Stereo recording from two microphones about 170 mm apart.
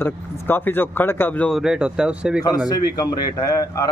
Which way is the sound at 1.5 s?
5° right (ahead or behind).